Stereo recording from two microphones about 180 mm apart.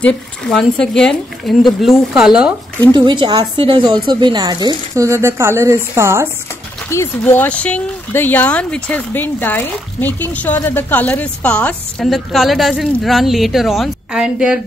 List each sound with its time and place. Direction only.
0.0 s speech: 5° left (ahead or behind)
2.9 s a woman's voice: 25° right (ahead or behind)
6.9 s speech: 15° left (ahead or behind); by 14.6 s 5° right (ahead or behind)